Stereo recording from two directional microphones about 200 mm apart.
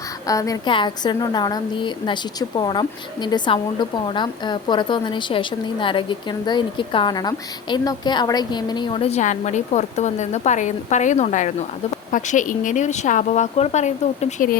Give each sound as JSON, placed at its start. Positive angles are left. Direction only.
{"t": 0.3, "sound": "a woman's voice", "side_deg": 15}